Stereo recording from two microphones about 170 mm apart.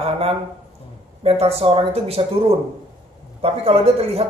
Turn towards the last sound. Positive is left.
turn(degrees=-35)  # may be behind; listen again after turning